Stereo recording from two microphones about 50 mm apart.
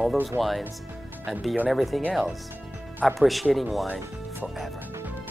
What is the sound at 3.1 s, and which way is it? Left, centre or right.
Speech, centre.